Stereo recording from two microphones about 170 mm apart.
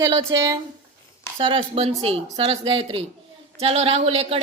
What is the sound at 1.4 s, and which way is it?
A woman's voice, 30° right (ahead or behind).